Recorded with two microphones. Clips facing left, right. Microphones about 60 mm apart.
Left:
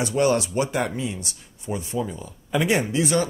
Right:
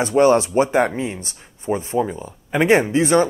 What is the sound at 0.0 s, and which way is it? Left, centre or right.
Speech, right.